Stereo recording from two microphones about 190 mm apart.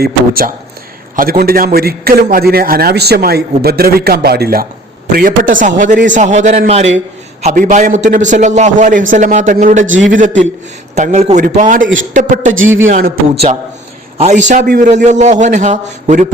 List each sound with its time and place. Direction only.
0.0 s a man's voice: 50° right (ahead or behind)
14.4 s a man's voice: 45° right (ahead or behind)